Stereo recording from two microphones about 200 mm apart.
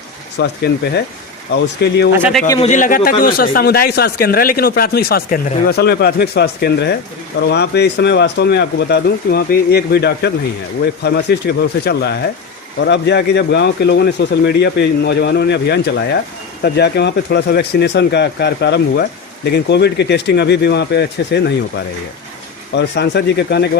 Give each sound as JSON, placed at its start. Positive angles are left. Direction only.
{"t": 0.3, "sound": "a man's voice", "side_deg": 55}
{"t": 2.6, "sound": "a man's voice", "side_deg": 35}
{"t": 22.7, "sound": "a man's voice", "side_deg": 60}